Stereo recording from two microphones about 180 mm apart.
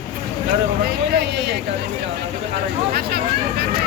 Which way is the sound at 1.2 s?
70° right (ahead or behind).